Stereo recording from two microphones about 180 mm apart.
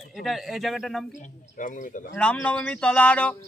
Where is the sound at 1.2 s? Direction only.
45° left (ahead or behind).